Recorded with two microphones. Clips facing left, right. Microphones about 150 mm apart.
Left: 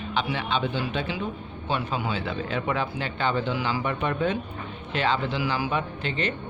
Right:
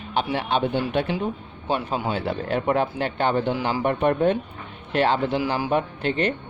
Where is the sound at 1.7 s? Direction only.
45° right (ahead or behind).